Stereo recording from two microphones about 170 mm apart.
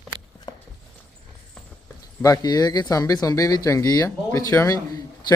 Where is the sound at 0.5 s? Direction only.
25° left (ahead or behind).